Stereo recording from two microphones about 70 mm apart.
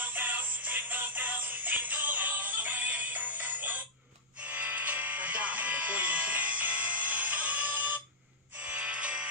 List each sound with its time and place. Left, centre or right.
0.0 s music: right